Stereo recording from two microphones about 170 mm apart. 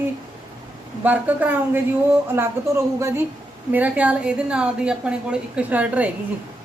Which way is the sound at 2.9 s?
15° right (ahead or behind).